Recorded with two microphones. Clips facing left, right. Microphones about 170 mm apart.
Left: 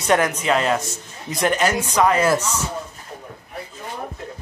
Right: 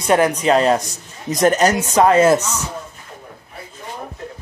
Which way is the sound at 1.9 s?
25° right (ahead or behind).